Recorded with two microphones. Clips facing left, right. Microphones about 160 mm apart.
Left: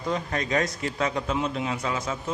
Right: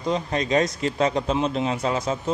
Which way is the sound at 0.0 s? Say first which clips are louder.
Right 4 dB; 20° right (ahead or behind).